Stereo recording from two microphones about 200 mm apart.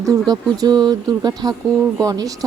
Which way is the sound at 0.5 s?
20° right (ahead or behind).